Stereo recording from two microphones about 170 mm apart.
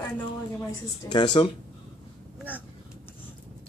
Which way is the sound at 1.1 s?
25° left (ahead or behind).